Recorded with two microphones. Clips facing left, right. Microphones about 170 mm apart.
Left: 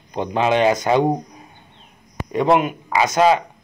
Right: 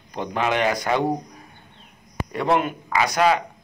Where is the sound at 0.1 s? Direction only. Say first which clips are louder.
Left 5 dB; 20° left (ahead or behind).